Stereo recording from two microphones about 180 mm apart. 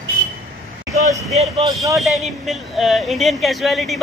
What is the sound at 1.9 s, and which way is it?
Speech, centre (ahead or behind).